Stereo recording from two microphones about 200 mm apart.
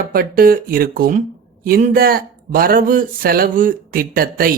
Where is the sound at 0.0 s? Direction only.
45° right (ahead or behind).